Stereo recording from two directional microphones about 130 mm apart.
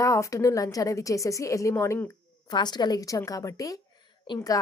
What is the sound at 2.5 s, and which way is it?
Speech, 35° left (ahead or behind).